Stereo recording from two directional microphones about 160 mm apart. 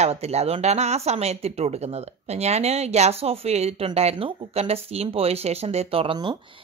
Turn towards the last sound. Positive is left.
turn(degrees=-35)  # may be behind; listen again after turning